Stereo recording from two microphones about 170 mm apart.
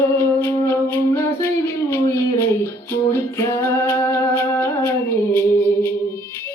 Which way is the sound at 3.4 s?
15° left (ahead or behind).